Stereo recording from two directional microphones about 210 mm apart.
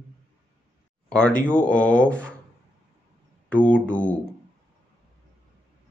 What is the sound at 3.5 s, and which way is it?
Speech, 5° left (ahead or behind).